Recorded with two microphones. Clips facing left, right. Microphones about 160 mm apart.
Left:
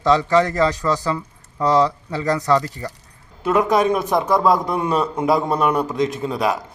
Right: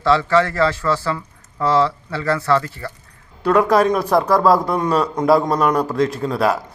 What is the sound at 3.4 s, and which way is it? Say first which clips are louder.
A man's voice: right 2 dB; centre (ahead or behind).